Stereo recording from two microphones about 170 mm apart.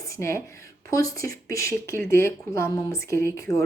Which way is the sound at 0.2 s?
15° left (ahead or behind).